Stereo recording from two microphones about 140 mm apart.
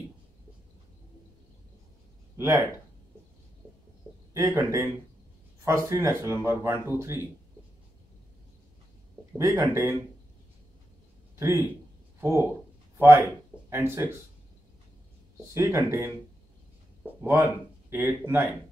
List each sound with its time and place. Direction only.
2.3 s a sound: 20° right (ahead or behind)
4.3 s speech: 20° right (ahead or behind)
9.4 s speech: 20° right (ahead or behind)
11.3 s speech: 20° right (ahead or behind)
15.5 s speech: 20° right (ahead or behind)
17.3 s speech: 15° right (ahead or behind)